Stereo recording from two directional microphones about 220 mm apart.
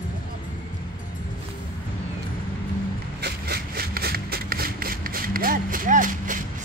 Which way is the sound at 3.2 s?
45° right (ahead or behind).